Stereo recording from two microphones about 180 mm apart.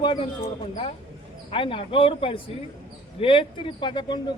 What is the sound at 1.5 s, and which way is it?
Speech, 30° left (ahead or behind).